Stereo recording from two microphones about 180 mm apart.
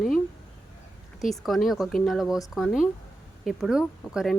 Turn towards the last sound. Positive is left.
turn(degrees=-5)  # may be behind; listen again after turning